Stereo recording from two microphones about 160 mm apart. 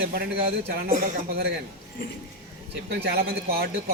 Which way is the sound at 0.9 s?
55° right (ahead or behind).